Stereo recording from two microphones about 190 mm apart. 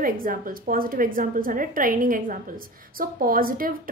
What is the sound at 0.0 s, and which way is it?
A woman's voice, 45° right (ahead or behind).